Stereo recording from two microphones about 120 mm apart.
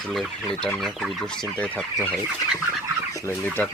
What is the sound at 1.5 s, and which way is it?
Fowl, 10° left (ahead or behind).